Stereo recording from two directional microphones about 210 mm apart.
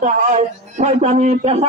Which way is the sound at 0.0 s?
35° right (ahead or behind).